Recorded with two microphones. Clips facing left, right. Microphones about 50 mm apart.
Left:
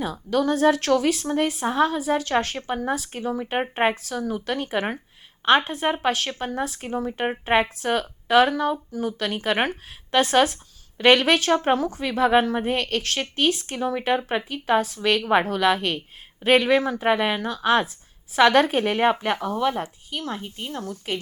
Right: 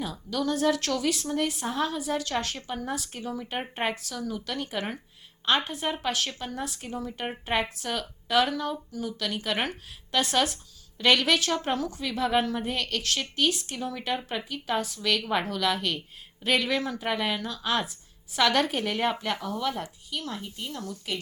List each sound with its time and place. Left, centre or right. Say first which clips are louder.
0.0 s speech: left 7 dB; left